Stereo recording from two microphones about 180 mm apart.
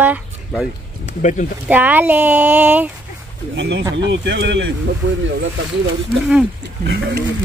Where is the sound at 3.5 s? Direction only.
80° right.